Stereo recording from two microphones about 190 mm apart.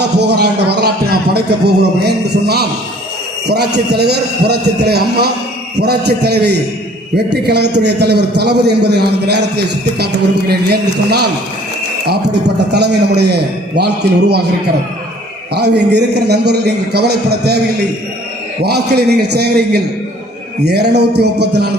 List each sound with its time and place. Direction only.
0.0 s a man's voice: 60° right (ahead or behind)
15.5 s a man's voice: 60° right (ahead or behind)
18.6 s a man's voice: 60° right (ahead or behind)